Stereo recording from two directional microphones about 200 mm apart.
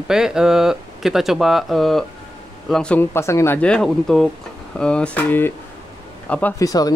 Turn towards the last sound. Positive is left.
turn(degrees=20)  # may be behind; listen again after turning